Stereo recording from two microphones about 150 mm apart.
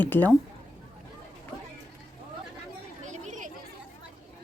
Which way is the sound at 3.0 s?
55° right (ahead or behind).